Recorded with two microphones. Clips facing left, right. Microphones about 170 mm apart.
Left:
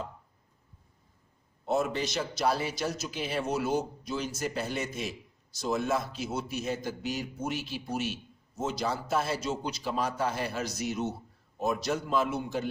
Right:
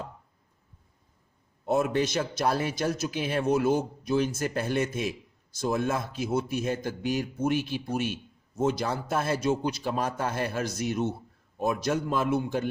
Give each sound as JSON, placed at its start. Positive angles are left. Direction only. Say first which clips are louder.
{"t": 1.6, "sound": "a man's voice", "louder": "right 4 dB", "side_deg": -50}